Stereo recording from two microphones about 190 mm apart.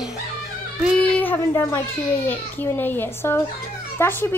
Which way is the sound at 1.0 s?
10° left (ahead or behind).